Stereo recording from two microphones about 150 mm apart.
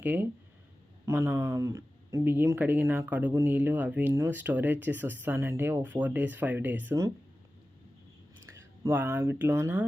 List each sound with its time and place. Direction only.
0.0 s speech: 10° right (ahead or behind)
8.8 s speech: 15° right (ahead or behind)